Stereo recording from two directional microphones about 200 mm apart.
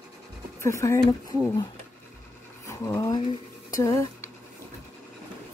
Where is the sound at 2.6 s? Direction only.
15° left (ahead or behind).